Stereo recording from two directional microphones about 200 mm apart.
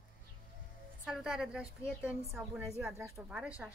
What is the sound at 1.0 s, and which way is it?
A woman's voice, centre (ahead or behind).